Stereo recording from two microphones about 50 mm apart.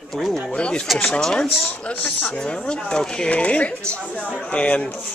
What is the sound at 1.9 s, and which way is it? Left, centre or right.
Speech, left.